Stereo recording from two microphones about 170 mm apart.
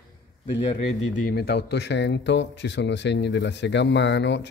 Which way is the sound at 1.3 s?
70° left (ahead or behind).